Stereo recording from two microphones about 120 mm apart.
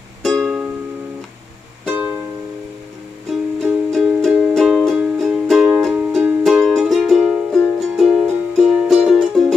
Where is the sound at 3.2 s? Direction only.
Centre (ahead or behind).